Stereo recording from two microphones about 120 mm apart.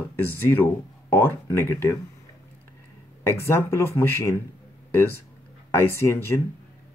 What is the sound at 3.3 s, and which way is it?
Speech, 20° left (ahead or behind).